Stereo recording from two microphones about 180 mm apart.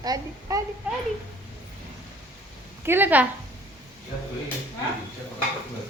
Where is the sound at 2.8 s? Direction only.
10° right (ahead or behind).